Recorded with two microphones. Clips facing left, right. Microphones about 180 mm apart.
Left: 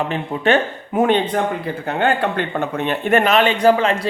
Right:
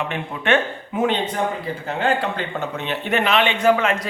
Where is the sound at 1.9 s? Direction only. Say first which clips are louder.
Left 3 dB; 60° left (ahead or behind).